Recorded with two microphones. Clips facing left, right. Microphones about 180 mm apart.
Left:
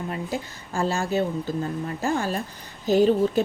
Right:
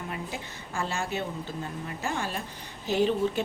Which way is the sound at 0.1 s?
40° left (ahead or behind).